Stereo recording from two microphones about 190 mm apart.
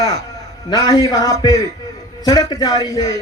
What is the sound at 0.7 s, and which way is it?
A man's voice, 20° left (ahead or behind).